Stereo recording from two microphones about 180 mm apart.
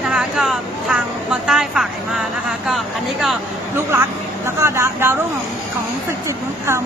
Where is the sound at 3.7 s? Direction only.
10° right (ahead or behind).